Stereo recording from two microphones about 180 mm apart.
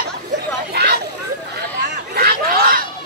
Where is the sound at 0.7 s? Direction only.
65° right (ahead or behind).